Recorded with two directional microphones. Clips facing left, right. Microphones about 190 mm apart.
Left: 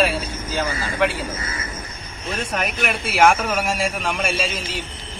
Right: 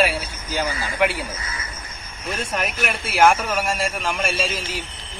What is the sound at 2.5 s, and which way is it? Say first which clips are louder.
A man's voice: left 2 dB; centre (ahead or behind).